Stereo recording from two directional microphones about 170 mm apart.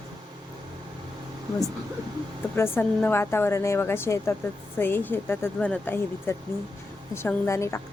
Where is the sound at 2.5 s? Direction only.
15° left (ahead or behind).